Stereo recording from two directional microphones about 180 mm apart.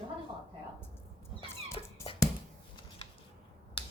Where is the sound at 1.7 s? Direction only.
30° left (ahead or behind).